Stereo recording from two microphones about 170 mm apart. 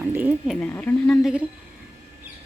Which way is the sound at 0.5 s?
10° left (ahead or behind).